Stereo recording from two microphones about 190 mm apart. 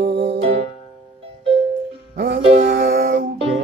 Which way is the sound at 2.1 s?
60° right (ahead or behind).